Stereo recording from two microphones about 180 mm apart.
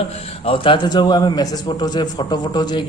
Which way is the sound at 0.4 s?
30° left (ahead or behind).